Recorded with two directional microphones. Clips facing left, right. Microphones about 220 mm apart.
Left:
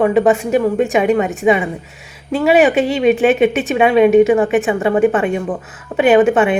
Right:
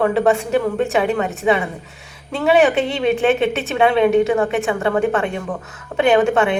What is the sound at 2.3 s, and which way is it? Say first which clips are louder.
A woman's voice: left 3 dB; 10° left (ahead or behind).